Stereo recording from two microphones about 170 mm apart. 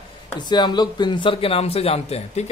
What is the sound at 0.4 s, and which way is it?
A man's voice, 25° left (ahead or behind).